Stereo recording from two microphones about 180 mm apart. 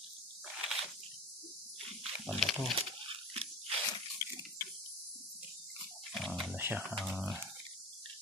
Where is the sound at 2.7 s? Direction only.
35° right (ahead or behind).